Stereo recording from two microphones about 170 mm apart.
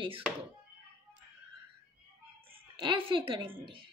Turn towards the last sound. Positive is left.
turn(degrees=-30)  # may be behind; listen again after turning